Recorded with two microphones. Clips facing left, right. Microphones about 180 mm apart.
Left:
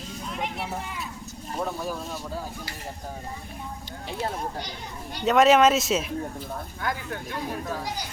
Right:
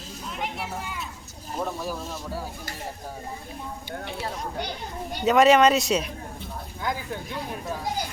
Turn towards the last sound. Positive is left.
turn(degrees=-15)  # may be behind; listen again after turning